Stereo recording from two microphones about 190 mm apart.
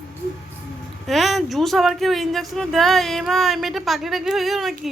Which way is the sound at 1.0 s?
Centre (ahead or behind).